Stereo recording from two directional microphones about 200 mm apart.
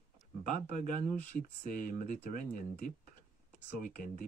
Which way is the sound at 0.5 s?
40° left (ahead or behind).